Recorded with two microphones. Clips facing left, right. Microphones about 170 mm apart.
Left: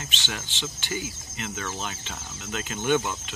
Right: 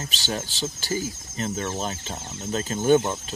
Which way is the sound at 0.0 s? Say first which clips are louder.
Right 6 dB; 35° right (ahead or behind).